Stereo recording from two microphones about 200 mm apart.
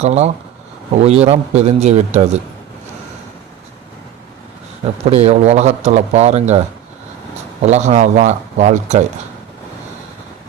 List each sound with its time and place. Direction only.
0.0 s speech: 35° right (ahead or behind)
5.0 s speech: 35° right (ahead or behind)
7.6 s speech: 35° right (ahead or behind)